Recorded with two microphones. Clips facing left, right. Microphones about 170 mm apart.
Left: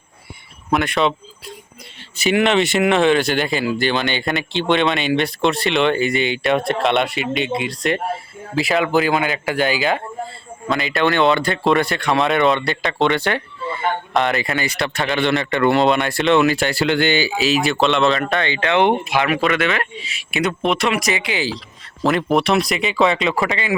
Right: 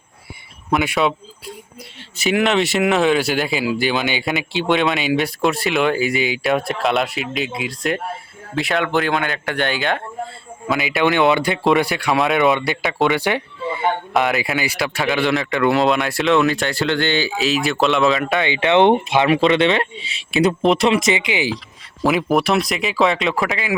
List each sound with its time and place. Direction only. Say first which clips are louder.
0.7 s speech: even; centre (ahead or behind)
2.1 s speech: left 1 dB; centre (ahead or behind)
11.0 s speech: even; 20° right (ahead or behind)
14.1 s speech: left 1 dB; centre (ahead or behind)
18.4 s speech: right 4 dB; 20° right (ahead or behind)
22.0 s speech: even; 5° right (ahead or behind)